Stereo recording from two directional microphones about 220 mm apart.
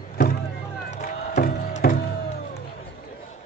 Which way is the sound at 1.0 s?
45° left (ahead or behind).